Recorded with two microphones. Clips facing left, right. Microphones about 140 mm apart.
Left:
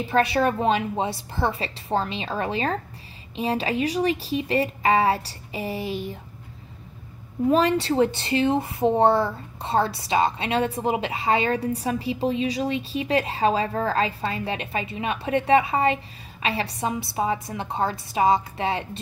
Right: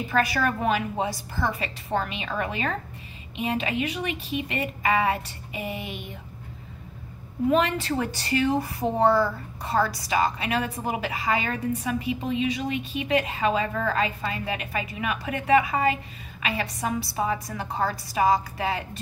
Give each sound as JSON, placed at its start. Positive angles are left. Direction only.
{"t": 0.1, "sound": "speech", "side_deg": 30}
{"t": 7.4, "sound": "speech", "side_deg": 35}